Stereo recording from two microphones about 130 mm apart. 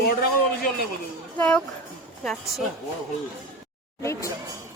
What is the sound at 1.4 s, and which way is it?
Speech, 10° left (ahead or behind).